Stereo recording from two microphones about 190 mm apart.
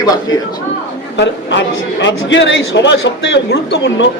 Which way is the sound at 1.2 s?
70° left (ahead or behind).